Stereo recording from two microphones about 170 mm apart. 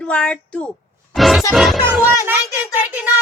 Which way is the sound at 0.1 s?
5° left (ahead or behind).